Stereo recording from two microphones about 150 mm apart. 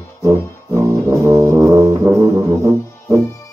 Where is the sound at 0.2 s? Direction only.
20° right (ahead or behind).